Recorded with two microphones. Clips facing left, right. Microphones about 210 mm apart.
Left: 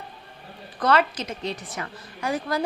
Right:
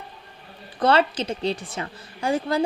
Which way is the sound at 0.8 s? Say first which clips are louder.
Right 2 dB; 30° right (ahead or behind).